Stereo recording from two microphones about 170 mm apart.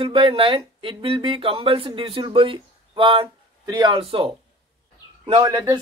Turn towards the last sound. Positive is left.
turn(degrees=-20)  # may be behind; listen again after turning